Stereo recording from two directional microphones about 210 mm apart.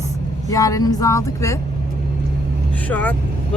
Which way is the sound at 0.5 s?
15° left (ahead or behind).